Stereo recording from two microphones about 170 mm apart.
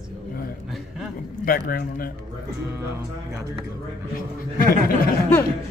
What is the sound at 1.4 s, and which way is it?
Speech, 60° left (ahead or behind).